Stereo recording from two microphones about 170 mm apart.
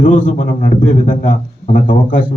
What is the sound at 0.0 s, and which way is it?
A man's voice, 50° left (ahead or behind).